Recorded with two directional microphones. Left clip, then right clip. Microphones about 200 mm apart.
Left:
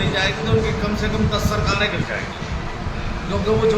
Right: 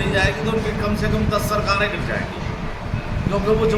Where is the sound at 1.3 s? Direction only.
Centre (ahead or behind).